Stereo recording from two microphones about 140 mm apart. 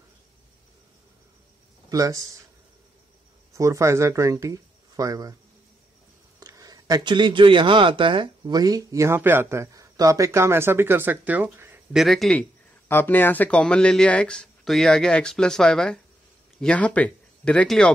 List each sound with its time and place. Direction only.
1.9 s speech: 25° right (ahead or behind)
3.5 s speech: 20° right (ahead or behind)
6.4 s speech: 25° right (ahead or behind)
11.9 s speech: centre (ahead or behind)